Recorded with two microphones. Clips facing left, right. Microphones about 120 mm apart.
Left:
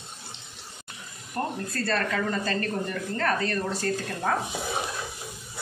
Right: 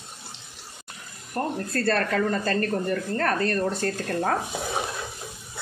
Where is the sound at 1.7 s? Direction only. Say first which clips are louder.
Right 6 dB; 55° right (ahead or behind).